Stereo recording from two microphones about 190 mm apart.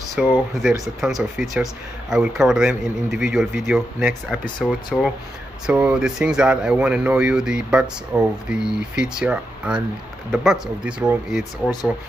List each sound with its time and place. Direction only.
0.2 s speech: 5° right (ahead or behind)